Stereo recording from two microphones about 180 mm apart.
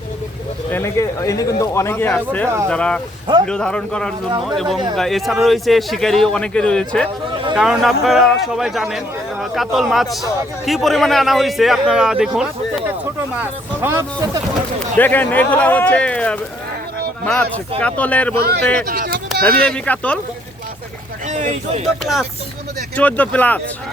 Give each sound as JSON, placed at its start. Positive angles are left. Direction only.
{"t": 0.7, "sound": "a man's voice", "side_deg": 15}
{"t": 14.9, "sound": "speech", "side_deg": 10}
{"t": 18.3, "sound": "speech", "side_deg": -60}
{"t": 19.6, "sound": "speech", "side_deg": 5}
{"t": 21.2, "sound": "a sound", "side_deg": -40}
{"t": 22.0, "sound": "a man's voice", "side_deg": 0}